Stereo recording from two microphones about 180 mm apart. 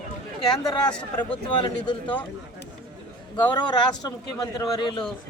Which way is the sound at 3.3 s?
25° left (ahead or behind).